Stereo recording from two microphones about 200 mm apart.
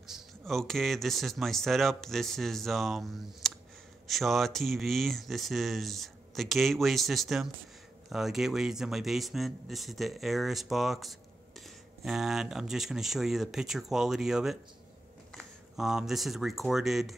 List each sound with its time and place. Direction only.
0.0 s speech: centre (ahead or behind)